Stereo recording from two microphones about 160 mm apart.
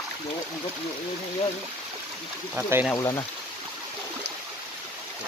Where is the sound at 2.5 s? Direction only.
10° right (ahead or behind).